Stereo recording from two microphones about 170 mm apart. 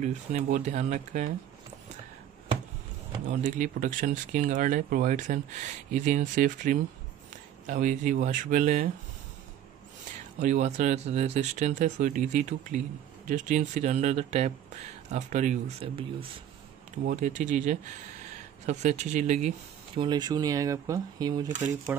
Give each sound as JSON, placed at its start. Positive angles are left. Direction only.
{"t": 0.0, "sound": "speech", "side_deg": -45}
{"t": 3.3, "sound": "speech", "side_deg": -50}
{"t": 10.4, "sound": "speech", "side_deg": -45}
{"t": 17.0, "sound": "speech", "side_deg": -45}
{"t": 20.0, "sound": "speech", "side_deg": -25}